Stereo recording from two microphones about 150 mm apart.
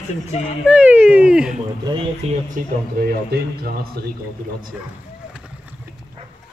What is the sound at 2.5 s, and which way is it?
Speech, 85° right.